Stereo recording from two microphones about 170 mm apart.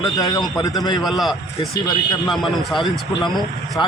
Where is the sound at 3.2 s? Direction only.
25° left (ahead or behind).